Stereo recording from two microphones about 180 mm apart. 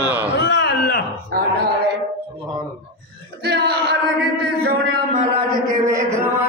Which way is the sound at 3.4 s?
65° right (ahead or behind).